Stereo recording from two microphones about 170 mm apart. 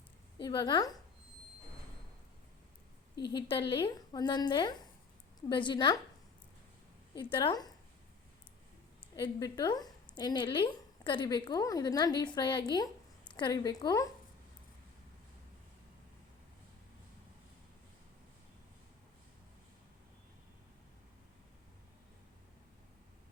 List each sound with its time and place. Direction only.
0.3 s a woman's voice: 25° left (ahead or behind)
3.2 s a woman's voice: 25° left (ahead or behind)
7.2 s a woman's voice: 30° left (ahead or behind)
9.1 s a woman's voice: 25° left (ahead or behind)